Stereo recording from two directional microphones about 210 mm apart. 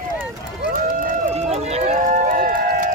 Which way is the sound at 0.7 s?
40° right (ahead or behind).